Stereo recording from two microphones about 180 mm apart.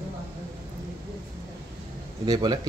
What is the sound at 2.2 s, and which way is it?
Speech, 20° right (ahead or behind).